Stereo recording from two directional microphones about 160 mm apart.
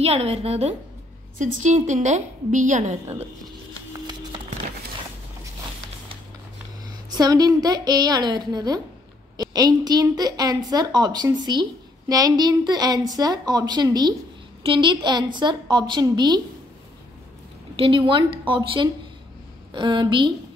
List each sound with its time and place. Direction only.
0.0 s a woman's voice: 40° right (ahead or behind)
3.9 s music: 25° right (ahead or behind)
7.1 s a woman's voice: 25° right (ahead or behind)
17.7 s a woman's voice: 35° right (ahead or behind)